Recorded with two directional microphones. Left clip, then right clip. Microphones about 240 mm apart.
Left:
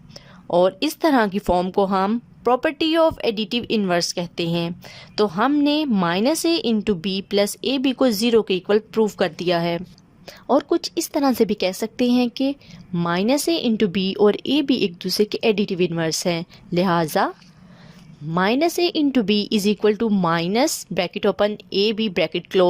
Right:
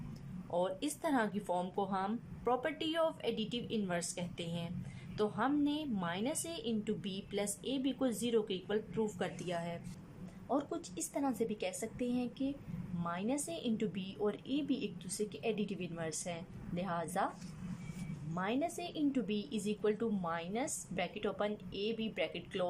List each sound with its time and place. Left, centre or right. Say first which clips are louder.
0.5 s a woman's voice: left 18 dB; left
18.3 s a woman's voice: left 19 dB; left